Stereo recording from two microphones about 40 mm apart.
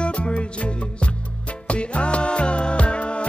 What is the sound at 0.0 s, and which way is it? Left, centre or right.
Music, left.